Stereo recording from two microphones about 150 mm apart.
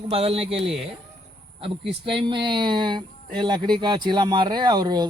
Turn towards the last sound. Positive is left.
turn(degrees=-30)  # may be behind; listen again after turning